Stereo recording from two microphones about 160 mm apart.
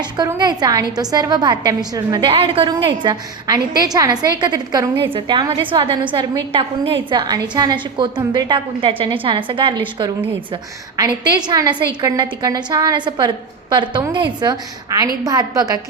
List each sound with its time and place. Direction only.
0.3 s a woman's voice: 25° right (ahead or behind)
10.9 s a woman's voice: 25° right (ahead or behind)